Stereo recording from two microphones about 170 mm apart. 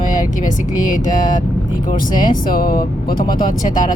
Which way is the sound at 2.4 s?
60° left (ahead or behind).